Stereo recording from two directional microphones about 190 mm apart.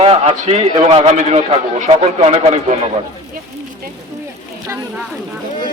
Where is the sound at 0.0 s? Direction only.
30° right (ahead or behind).